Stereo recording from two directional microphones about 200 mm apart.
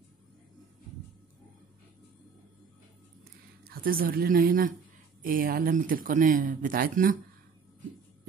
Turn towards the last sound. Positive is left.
turn(degrees=-45)  # may be behind; listen again after turning